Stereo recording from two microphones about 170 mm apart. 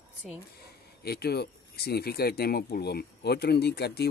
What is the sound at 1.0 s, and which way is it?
Speech, 70° left (ahead or behind).